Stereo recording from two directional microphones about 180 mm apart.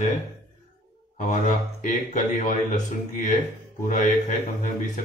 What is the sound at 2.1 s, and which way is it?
Speech, 45° left (ahead or behind).